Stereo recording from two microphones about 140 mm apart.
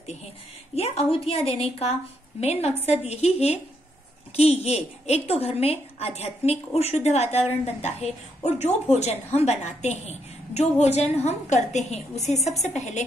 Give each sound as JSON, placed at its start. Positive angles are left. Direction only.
{"t": 0.7, "sound": "a woman's voice", "side_deg": 45}